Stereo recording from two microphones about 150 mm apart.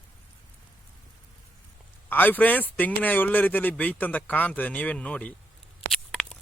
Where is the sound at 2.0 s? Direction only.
10° left (ahead or behind).